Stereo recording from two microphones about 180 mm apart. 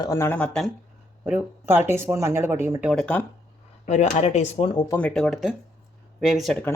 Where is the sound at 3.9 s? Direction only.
35° left (ahead or behind).